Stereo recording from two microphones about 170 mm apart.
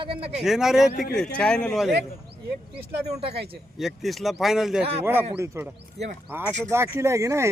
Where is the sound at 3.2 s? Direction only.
75° right (ahead or behind).